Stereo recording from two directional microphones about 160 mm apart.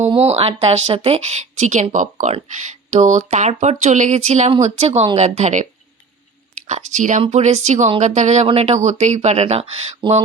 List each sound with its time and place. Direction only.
0.1 s a woman's voice: 40° right (ahead or behind)
6.7 s a woman's voice: 50° right (ahead or behind)